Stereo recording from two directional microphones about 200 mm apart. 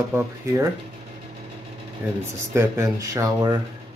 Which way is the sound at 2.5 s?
15° right (ahead or behind).